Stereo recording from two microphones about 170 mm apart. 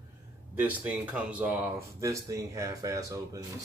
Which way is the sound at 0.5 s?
10° right (ahead or behind).